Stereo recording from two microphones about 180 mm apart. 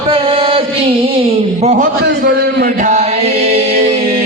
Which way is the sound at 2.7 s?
40° right (ahead or behind).